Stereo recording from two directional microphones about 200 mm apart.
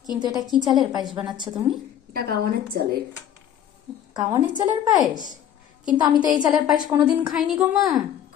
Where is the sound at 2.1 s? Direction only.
50° right (ahead or behind).